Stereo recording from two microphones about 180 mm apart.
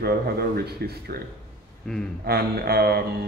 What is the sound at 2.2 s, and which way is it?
Speech, 60° right (ahead or behind).